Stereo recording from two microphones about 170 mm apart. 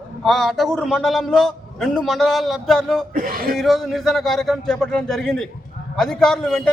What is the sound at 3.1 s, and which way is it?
Speech, 55° right (ahead or behind).